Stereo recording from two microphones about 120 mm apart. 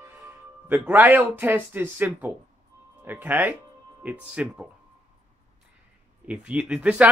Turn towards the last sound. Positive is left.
turn(degrees=-10)  # may be behind; listen again after turning